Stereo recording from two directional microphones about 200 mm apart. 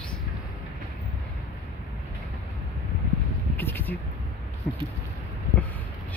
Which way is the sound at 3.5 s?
10° left (ahead or behind).